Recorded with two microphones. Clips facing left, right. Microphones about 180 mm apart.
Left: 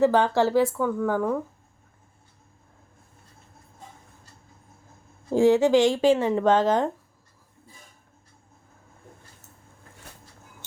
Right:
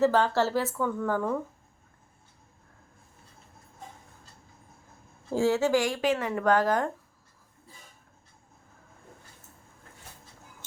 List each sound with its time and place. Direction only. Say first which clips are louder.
0.0 s speech: left 3 dB; 15° left (ahead or behind)
5.3 s speech: left 6 dB; 15° left (ahead or behind)